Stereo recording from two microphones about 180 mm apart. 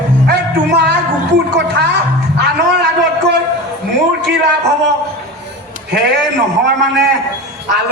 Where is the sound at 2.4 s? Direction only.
70° right (ahead or behind).